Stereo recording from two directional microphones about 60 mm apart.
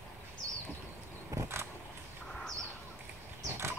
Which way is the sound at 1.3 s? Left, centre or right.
Right.